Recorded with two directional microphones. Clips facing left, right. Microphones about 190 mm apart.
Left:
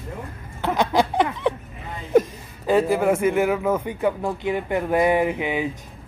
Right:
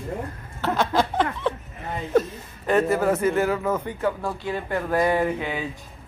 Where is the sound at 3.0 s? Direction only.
10° left (ahead or behind).